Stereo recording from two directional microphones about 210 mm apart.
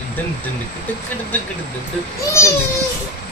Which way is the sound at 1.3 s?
10° left (ahead or behind).